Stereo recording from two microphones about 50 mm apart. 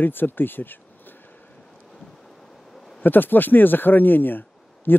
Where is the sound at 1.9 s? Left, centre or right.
Centre.